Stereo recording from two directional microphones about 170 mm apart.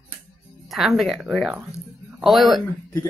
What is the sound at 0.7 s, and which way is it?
Speech, centre (ahead or behind).